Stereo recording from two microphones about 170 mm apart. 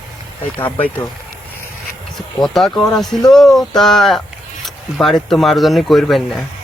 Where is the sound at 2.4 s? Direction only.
Centre (ahead or behind).